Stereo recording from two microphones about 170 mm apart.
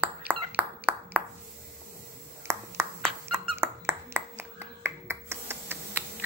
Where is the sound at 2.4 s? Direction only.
15° right (ahead or behind).